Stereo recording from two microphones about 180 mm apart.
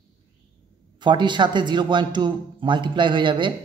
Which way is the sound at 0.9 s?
25° right (ahead or behind).